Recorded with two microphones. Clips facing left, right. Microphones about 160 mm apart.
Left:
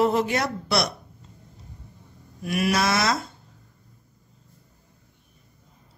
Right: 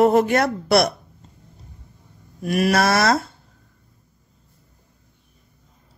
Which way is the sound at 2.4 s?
45° right (ahead or behind).